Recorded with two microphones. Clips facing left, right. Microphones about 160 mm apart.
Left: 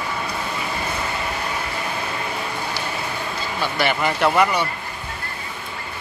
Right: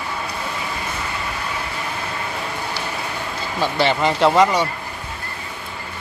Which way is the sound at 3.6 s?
25° right (ahead or behind).